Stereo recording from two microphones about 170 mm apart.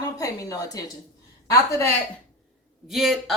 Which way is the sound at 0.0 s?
20° left (ahead or behind).